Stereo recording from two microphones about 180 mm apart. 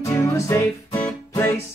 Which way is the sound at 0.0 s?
15° left (ahead or behind).